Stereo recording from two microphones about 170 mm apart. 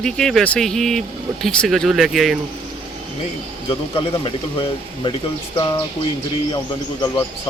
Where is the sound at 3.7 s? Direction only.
30° left (ahead or behind).